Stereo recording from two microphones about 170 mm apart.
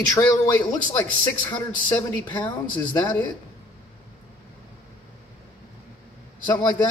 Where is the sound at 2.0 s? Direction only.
10° left (ahead or behind).